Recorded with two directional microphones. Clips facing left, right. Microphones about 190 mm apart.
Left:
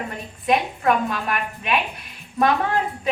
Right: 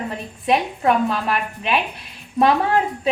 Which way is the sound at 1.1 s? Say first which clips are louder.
Right 3 dB; 30° right (ahead or behind).